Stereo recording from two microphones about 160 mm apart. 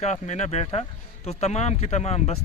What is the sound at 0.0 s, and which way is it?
A man's voice, 45° left (ahead or behind).